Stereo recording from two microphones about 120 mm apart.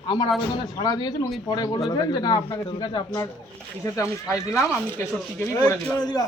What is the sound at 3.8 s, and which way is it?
Speech, 25° left (ahead or behind).